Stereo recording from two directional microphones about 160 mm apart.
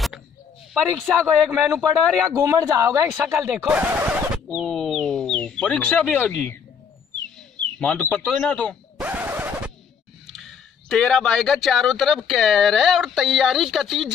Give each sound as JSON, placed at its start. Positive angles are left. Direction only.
{"t": 1.2, "sound": "a man's voice", "side_deg": -15}
{"t": 3.3, "sound": "speech", "side_deg": -5}
{"t": 4.6, "sound": "speech", "side_deg": 5}
{"t": 7.3, "sound": "bird", "side_deg": 10}
{"t": 9.0, "sound": "scratch", "side_deg": -10}
{"t": 10.2, "sound": "speech", "side_deg": 0}